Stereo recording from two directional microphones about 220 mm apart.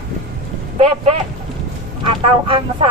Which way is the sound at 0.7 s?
25° right (ahead or behind).